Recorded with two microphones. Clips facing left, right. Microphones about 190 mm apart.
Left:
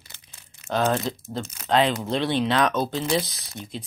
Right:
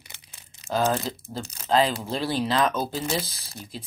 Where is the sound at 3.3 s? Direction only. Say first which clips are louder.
Left 3 dB; 30° right (ahead or behind).